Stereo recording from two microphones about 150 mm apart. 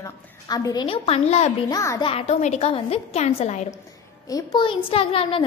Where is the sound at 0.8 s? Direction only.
40° left (ahead or behind).